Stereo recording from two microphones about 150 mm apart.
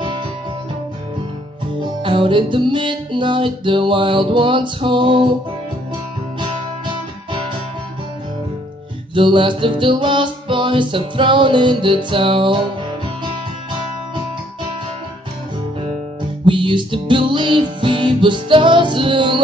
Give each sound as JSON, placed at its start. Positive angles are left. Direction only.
{"t": 1.8, "sound": "music", "side_deg": -35}
{"t": 9.1, "sound": "music", "side_deg": -35}
{"t": 16.4, "sound": "music", "side_deg": -35}